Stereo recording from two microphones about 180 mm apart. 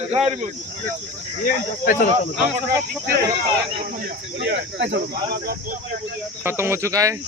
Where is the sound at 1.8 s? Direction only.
50° left (ahead or behind).